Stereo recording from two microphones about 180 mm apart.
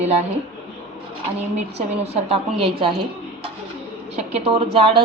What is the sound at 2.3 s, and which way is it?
Speech, 30° right (ahead or behind).